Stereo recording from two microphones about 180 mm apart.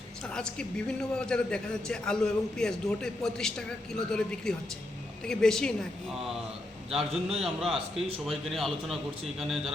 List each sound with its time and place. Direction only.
0.3 s a man's voice: 5° left (ahead or behind)
7.1 s a man's voice: 35° right (ahead or behind)
7.4 s a man's voice: centre (ahead or behind)